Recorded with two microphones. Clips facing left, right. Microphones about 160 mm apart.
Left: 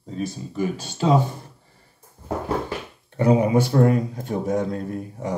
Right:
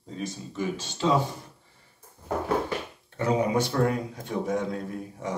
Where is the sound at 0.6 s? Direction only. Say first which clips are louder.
Left 4 dB; 45° left (ahead or behind).